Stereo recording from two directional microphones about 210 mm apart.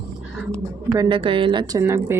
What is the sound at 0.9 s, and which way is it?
A woman's voice, 20° right (ahead or behind).